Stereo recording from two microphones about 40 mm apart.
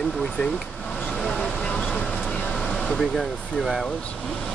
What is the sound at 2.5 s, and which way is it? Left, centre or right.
Air conditioning, centre.